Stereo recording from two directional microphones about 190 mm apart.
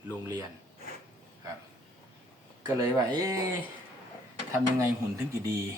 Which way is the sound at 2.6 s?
20° right (ahead or behind).